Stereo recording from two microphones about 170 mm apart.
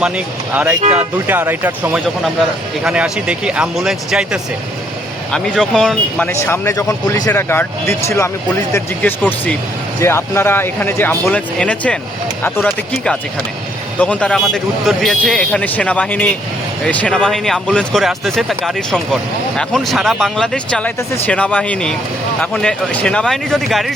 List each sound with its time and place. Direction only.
0.5 s speech: 15° right (ahead or behind)
0.8 s speech: 40° right (ahead or behind)
1.3 s speech: 10° right (ahead or behind); by 11.9 s 5° left (ahead or behind)
14.0 s speech: 5° left (ahead or behind)